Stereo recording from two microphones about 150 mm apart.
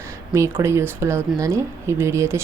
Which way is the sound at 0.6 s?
20° right (ahead or behind).